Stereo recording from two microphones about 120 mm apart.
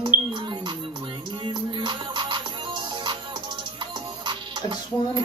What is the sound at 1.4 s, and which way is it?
Music, 40° right (ahead or behind).